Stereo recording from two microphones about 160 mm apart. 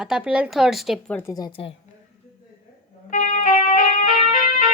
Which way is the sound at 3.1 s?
50° left (ahead or behind).